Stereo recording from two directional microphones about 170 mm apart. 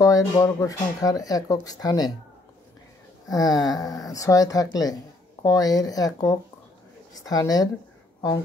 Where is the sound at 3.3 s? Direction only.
20° left (ahead or behind).